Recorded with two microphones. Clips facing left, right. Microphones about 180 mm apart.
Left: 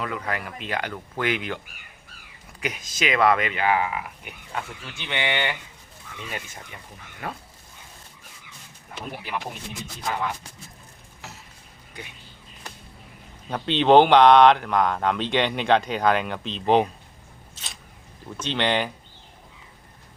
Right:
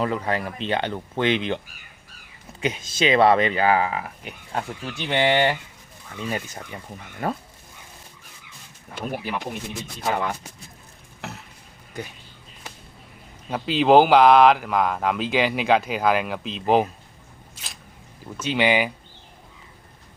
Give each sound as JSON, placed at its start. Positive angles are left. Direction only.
{"t": 0.0, "sound": "speech", "side_deg": -30}
{"t": 13.5, "sound": "speech", "side_deg": -5}
{"t": 17.6, "sound": "a sound", "side_deg": -10}
{"t": 18.3, "sound": "speech", "side_deg": -10}